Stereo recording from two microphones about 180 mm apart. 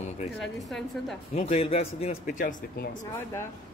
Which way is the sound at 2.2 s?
50° left (ahead or behind).